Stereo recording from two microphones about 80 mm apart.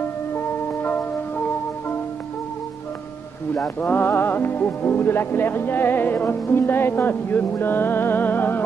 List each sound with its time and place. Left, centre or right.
3.8 s music: left